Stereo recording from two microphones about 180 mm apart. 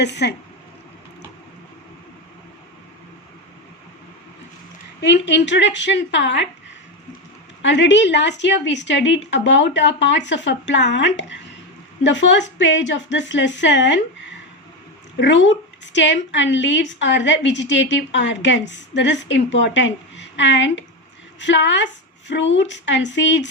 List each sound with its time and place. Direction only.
0.0 s speech: 70° left (ahead or behind)
4.9 s a woman's voice: 75° left (ahead or behind)
7.6 s a woman's voice: 80° left
15.2 s a woman's voice: 90° left